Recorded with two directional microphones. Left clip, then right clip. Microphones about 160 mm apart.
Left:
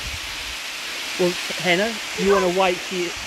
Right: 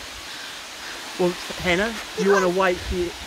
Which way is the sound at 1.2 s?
15° left (ahead or behind).